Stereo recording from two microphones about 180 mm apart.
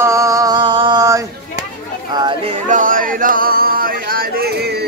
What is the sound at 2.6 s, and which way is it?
Speech, 45° right (ahead or behind).